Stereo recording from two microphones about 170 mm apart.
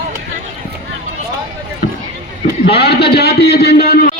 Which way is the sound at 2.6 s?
70° left (ahead or behind).